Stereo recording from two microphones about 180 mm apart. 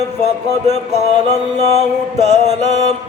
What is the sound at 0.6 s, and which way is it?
Music, 40° right (ahead or behind).